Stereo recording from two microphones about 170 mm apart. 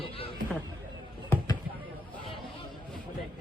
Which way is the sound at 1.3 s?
15° left (ahead or behind).